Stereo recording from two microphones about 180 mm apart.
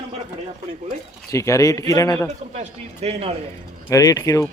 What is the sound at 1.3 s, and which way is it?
Speech, 15° left (ahead or behind).